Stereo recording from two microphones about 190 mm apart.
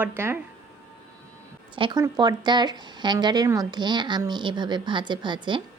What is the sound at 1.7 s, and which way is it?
Speech, 25° right (ahead or behind).